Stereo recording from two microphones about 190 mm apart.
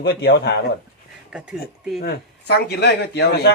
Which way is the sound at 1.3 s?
5° right (ahead or behind).